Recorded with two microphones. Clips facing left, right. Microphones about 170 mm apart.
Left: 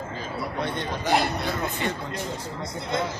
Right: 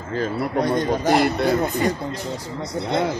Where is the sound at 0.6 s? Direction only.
40° right (ahead or behind).